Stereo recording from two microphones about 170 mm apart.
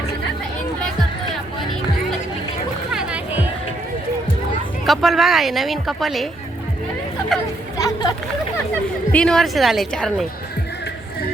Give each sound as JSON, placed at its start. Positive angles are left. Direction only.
{"t": 2.9, "sound": "music", "side_deg": -5}
{"t": 4.9, "sound": "speech", "side_deg": 0}
{"t": 7.3, "sound": "speech", "side_deg": 0}
{"t": 7.8, "sound": "a sound", "side_deg": 20}
{"t": 9.1, "sound": "speech", "side_deg": 5}